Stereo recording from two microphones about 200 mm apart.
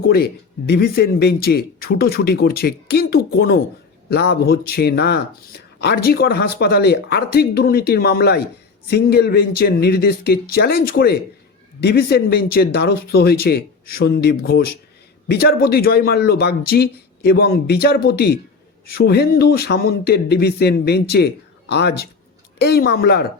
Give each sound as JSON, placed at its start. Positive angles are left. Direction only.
{"t": 0.7, "sound": "speech", "side_deg": 50}